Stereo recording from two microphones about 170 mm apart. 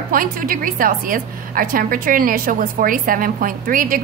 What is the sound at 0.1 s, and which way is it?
A woman's voice, 55° right (ahead or behind).